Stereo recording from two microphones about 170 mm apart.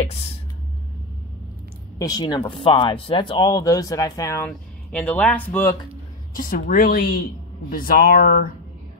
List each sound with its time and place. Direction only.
2.0 s speech: 20° left (ahead or behind)
6.3 s speech: 55° left (ahead or behind)